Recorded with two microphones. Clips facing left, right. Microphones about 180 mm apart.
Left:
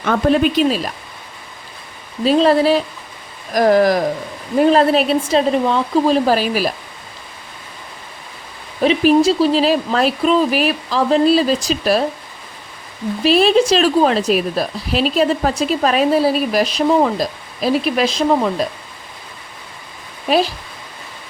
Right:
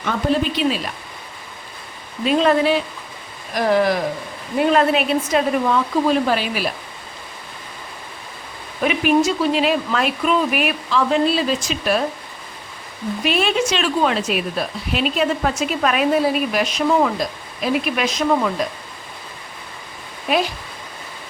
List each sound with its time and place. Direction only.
0.0 s speech: 50° left (ahead or behind)
2.2 s a woman's voice: 35° left (ahead or behind)
8.8 s a woman's voice: 30° left (ahead or behind)
13.2 s a woman's voice: 35° left (ahead or behind)